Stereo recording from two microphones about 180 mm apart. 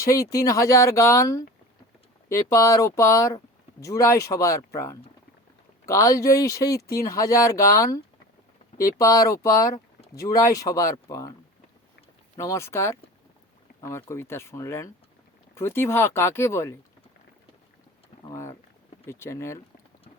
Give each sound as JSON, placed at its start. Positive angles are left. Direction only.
{"t": 0.0, "sound": "speech", "side_deg": 20}
{"t": 12.4, "sound": "speech", "side_deg": 15}
{"t": 18.3, "sound": "speech", "side_deg": 15}